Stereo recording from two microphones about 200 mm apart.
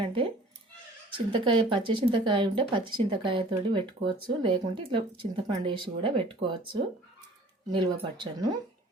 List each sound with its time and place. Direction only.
0.0 s a sound: 25° right (ahead or behind)
1.1 s speech: 25° right (ahead or behind)
7.7 s speech: 25° right (ahead or behind)